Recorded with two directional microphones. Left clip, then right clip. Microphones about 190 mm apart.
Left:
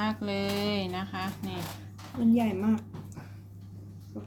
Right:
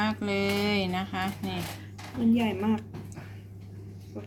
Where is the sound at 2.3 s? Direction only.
40° left (ahead or behind).